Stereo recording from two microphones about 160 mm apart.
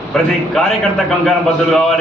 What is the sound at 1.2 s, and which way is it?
Speech, centre (ahead or behind).